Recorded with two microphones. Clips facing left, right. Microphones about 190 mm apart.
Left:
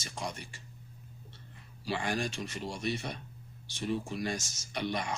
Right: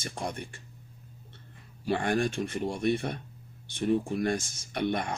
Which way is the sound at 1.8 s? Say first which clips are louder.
Right 6 dB; 55° right (ahead or behind).